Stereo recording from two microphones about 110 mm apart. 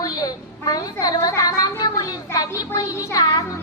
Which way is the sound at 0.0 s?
35° left (ahead or behind).